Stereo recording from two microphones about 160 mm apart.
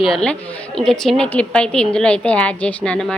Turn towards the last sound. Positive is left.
turn(degrees=5)  # may be behind; listen again after turning